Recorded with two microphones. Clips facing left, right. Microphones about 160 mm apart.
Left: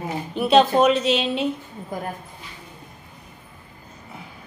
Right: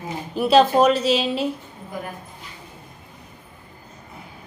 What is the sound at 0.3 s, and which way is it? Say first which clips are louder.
A woman's voice: right 1 dB; centre (ahead or behind).